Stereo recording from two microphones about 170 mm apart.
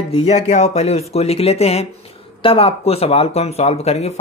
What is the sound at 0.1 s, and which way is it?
Speech, 40° left (ahead or behind).